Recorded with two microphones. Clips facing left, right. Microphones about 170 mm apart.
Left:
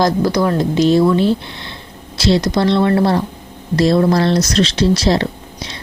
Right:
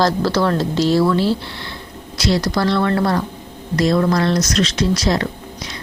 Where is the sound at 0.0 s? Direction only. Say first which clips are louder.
Left 2 dB; 15° left (ahead or behind).